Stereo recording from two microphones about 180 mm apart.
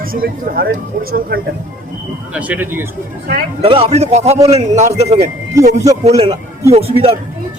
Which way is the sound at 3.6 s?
30° right (ahead or behind).